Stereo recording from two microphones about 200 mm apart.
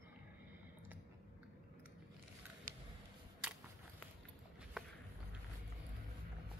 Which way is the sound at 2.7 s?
45° right (ahead or behind).